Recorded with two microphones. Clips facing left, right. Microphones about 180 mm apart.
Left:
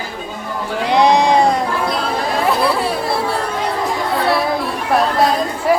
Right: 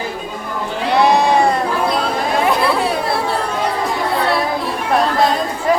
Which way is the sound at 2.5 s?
Centre (ahead or behind).